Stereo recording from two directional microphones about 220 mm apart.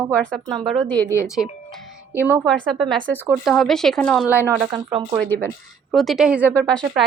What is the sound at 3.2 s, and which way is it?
Speech, centre (ahead or behind).